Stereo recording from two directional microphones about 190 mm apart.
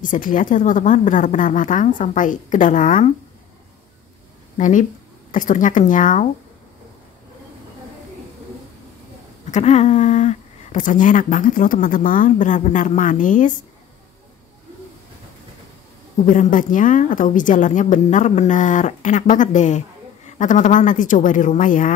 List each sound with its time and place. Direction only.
0.0 s speech: 45° left (ahead or behind)
4.6 s speech: 40° left (ahead or behind)
9.5 s speech: 35° left (ahead or behind)
16.3 s speech: 45° left (ahead or behind)